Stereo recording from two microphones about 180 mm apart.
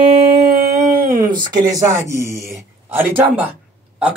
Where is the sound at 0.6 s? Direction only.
55° right (ahead or behind).